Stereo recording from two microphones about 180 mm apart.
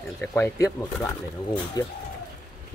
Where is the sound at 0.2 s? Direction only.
10° left (ahead or behind).